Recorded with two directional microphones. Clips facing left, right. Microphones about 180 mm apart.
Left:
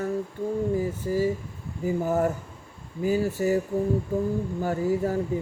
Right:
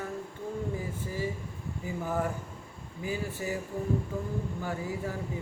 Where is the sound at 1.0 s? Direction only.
40° left (ahead or behind).